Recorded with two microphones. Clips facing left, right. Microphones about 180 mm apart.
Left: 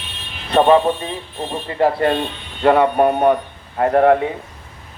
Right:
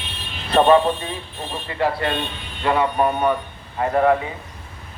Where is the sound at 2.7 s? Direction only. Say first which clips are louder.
Left 6 dB; 55° left (ahead or behind).